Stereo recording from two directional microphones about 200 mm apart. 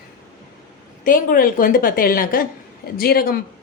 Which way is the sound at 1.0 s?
45° left (ahead or behind).